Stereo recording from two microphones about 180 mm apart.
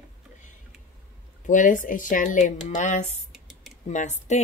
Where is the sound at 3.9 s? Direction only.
40° left (ahead or behind).